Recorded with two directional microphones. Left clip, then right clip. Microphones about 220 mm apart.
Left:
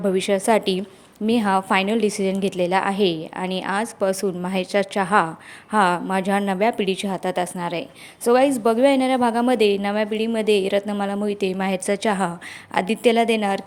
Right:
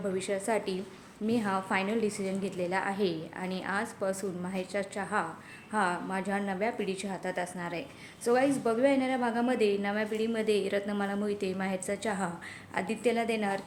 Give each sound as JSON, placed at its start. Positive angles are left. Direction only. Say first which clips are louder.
{"t": 0.0, "sound": "a woman's voice", "louder": "left 12 dB", "side_deg": 40}